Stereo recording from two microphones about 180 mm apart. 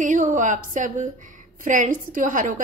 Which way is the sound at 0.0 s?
45° right (ahead or behind).